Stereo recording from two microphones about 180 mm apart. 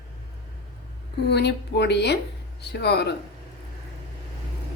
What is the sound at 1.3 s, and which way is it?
Speech, 70° left (ahead or behind).